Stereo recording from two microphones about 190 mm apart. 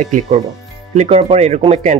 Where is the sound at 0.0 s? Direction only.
40° right (ahead or behind).